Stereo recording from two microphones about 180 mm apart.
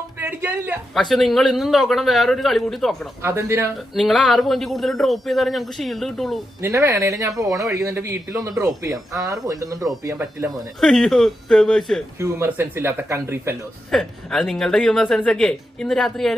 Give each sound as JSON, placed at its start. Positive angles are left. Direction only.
{"t": 0.2, "sound": "speech", "side_deg": -10}
{"t": 3.2, "sound": "speech", "side_deg": -15}
{"t": 3.9, "sound": "speech", "side_deg": 0}
{"t": 6.6, "sound": "speech", "side_deg": -15}
{"t": 10.8, "sound": "speech", "side_deg": 0}
{"t": 12.2, "sound": "speech", "side_deg": -15}
{"t": 13.8, "sound": "speech", "side_deg": 5}